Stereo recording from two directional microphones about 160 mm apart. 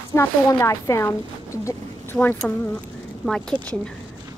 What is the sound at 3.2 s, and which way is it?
Speech, 5° left (ahead or behind).